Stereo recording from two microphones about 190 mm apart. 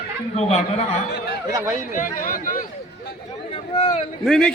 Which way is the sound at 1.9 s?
45° left (ahead or behind).